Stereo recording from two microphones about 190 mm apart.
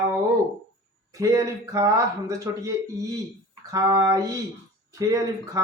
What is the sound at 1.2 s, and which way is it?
Speech, 15° right (ahead or behind).